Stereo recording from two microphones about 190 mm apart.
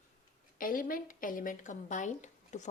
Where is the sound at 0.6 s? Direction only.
45° left (ahead or behind).